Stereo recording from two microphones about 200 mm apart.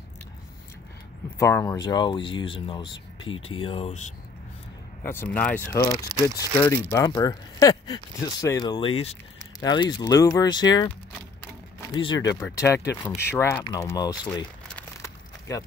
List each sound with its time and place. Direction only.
1.4 s speech: 15° left (ahead or behind)
3.3 s speech: 85° left
3.6 s speech: 30° left (ahead or behind)
5.0 s speech: 10° left (ahead or behind)
11.4 s a sound: 15° left (ahead or behind)
12.0 s speech: 20° left (ahead or behind)
14.8 s a sound: 15° left (ahead or behind)